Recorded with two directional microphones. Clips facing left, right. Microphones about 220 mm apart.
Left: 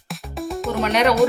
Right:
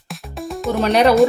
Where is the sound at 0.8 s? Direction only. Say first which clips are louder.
Right 4 dB; 30° right (ahead or behind).